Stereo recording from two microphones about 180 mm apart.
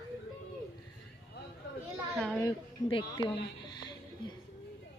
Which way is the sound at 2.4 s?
25° left (ahead or behind).